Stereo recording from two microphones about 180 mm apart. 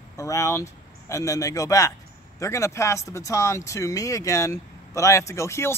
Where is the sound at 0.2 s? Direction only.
15° left (ahead or behind).